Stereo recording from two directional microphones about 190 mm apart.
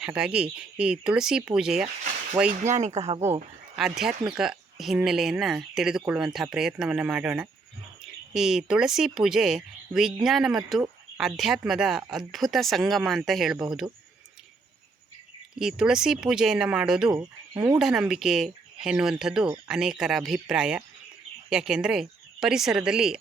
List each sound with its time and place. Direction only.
0.0 s speech: 5° right (ahead or behind)
2.7 s speech: 35° right (ahead or behind)
3.8 s speech: centre (ahead or behind)
15.5 s speech: 5° right (ahead or behind)
17.1 s speech: 20° right (ahead or behind)
17.7 s speech: centre (ahead or behind)